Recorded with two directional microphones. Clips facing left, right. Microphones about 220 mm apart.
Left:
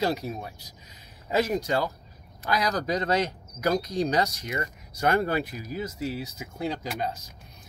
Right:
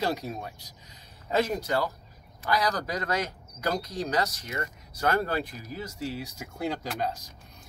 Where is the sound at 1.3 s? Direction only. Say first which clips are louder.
Left 2 dB; 10° left (ahead or behind).